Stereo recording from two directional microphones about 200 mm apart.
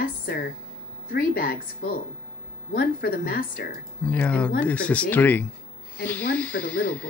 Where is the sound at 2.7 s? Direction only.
50° left (ahead or behind).